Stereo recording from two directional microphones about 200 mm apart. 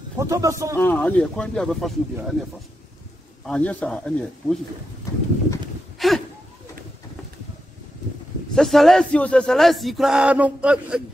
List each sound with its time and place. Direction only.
0.2 s a man's voice: 15° right (ahead or behind)
0.7 s speech: 10° left (ahead or behind)
3.4 s speech: 5° left (ahead or behind)
5.9 s a sound: centre (ahead or behind)
8.5 s speech: centre (ahead or behind)